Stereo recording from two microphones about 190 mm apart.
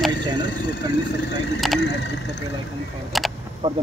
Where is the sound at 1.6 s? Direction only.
Centre (ahead or behind).